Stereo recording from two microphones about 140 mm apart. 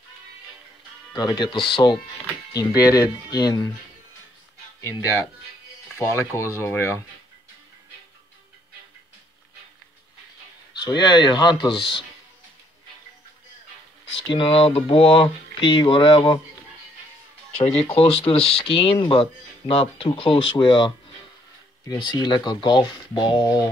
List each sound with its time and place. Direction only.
1.1 s speech: 30° left (ahead or behind)
5.9 s speech: 20° left (ahead or behind)
10.8 s speech: 30° left (ahead or behind)
14.1 s speech: 35° left (ahead or behind)
17.6 s speech: 40° left (ahead or behind)